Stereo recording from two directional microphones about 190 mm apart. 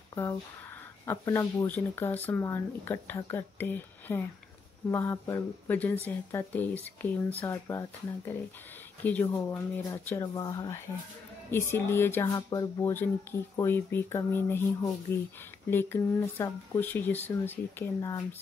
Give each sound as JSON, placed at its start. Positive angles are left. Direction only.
{"t": 0.1, "sound": "speech", "side_deg": 15}
{"t": 9.0, "sound": "speech", "side_deg": 10}